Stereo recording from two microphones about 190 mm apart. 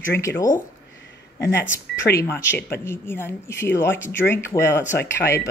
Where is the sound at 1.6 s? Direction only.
75° left (ahead or behind).